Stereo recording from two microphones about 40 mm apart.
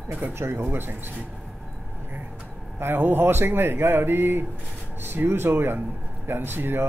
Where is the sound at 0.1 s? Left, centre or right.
Right.